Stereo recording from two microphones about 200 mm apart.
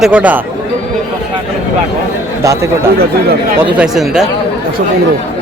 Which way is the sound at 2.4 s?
15° right (ahead or behind).